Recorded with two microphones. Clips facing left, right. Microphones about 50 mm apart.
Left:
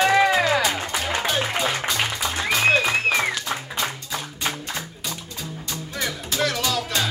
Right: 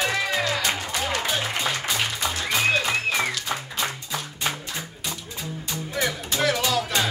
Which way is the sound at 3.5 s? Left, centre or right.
Centre.